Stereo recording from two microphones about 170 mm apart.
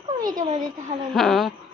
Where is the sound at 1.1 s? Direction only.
Centre (ahead or behind).